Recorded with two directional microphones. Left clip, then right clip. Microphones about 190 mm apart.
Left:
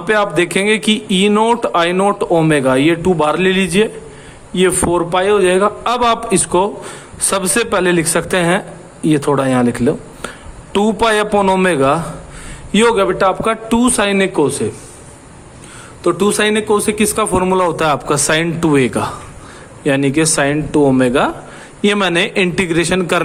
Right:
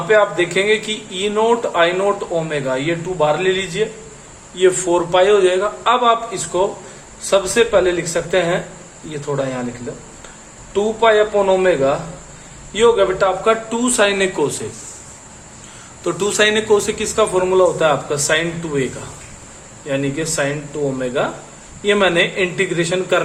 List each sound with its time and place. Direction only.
0.1 s speech: 55° left (ahead or behind)
4.5 s a man's voice: 45° left (ahead or behind); by 9.6 s 65° left (ahead or behind)
10.7 s a man's voice: 60° left (ahead or behind); by 14.7 s 35° left (ahead or behind)
16.0 s a man's voice: 40° left (ahead or behind); by 18.9 s 55° left (ahead or behind)
19.9 s speech: 55° left (ahead or behind)